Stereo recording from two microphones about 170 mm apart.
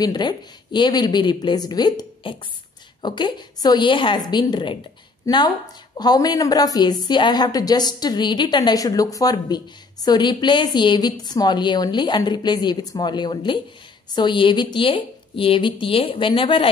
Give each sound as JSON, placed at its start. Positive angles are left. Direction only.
{"t": 0.0, "sound": "a woman's voice", "side_deg": 25}